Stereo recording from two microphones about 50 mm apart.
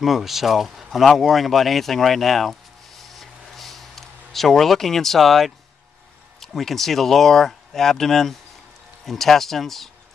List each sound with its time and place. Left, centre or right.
0.0 s speech: centre
3.0 s a sound: centre
6.4 s speech: centre